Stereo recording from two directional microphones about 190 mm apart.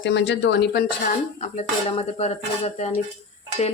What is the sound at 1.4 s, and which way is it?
Dishes, 35° left (ahead or behind).